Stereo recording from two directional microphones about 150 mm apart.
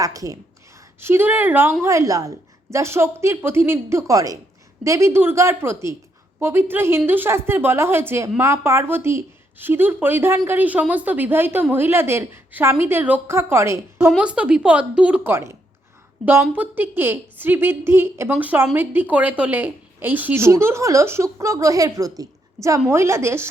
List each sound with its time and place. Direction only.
0.0 s a woman's voice: 25° right (ahead or behind)
14.2 s a woman's voice: 5° right (ahead or behind)